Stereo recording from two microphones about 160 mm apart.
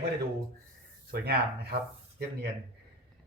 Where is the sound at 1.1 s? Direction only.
80° right.